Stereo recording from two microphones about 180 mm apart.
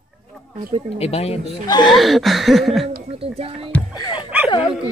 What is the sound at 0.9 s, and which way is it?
Speech, 35° left (ahead or behind).